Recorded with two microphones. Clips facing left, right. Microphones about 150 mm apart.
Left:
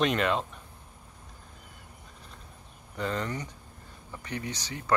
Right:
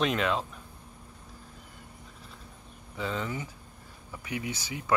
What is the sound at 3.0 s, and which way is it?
Speech, centre (ahead or behind).